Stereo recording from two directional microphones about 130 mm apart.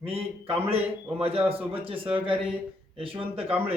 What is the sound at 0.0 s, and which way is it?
A man's voice, 45° right (ahead or behind).